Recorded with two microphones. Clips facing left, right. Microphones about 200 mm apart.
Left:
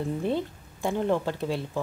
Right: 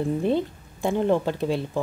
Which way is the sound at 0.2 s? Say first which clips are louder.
Right 4 dB; 20° right (ahead or behind).